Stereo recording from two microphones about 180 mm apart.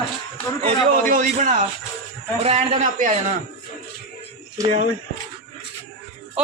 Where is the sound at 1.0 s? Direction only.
50° right (ahead or behind).